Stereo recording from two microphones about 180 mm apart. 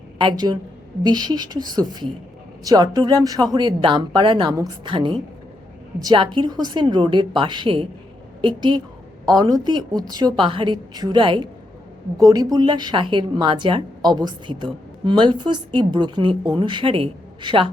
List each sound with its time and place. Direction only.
0.2 s a woman's voice: 25° right (ahead or behind)